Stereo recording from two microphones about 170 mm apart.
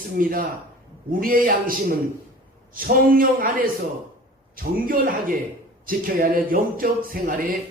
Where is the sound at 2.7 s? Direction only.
60° right (ahead or behind).